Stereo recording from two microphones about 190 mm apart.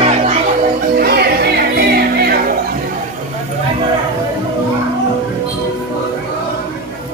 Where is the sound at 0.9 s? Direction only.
55° right (ahead or behind).